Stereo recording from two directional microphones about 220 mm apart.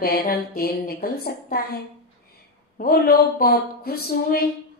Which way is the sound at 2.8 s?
40° left (ahead or behind).